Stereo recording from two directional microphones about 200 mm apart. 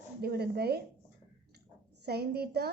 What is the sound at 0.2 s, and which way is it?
Speech, 50° right (ahead or behind).